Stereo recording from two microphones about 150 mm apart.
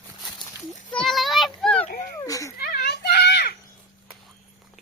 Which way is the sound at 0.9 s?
Centre (ahead or behind).